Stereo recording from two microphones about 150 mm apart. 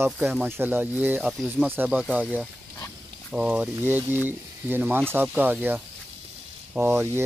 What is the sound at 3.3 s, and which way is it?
Speech, 5° right (ahead or behind).